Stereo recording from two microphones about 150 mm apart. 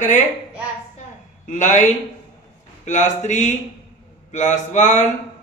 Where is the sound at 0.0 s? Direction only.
55° left (ahead or behind).